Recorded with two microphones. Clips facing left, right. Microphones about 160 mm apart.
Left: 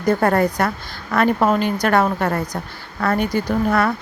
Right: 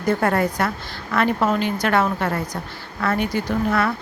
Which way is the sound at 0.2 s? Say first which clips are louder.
Left 3 dB; 40° left (ahead or behind).